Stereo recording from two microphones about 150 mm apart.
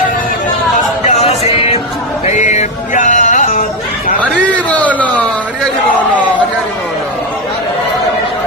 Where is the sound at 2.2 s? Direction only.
55° left (ahead or behind).